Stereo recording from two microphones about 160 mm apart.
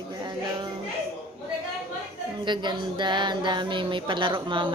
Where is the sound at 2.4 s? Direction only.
30° right (ahead or behind).